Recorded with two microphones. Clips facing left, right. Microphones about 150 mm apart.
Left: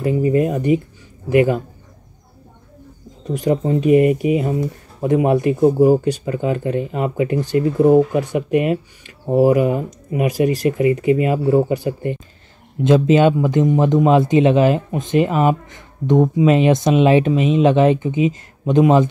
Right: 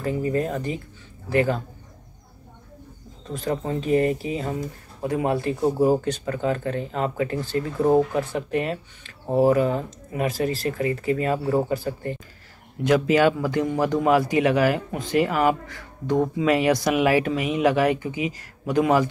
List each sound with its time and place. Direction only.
0.0 s speech: 15° left (ahead or behind)
3.3 s speech: 15° left (ahead or behind)